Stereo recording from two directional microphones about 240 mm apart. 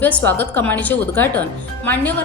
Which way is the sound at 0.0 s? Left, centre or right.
Centre.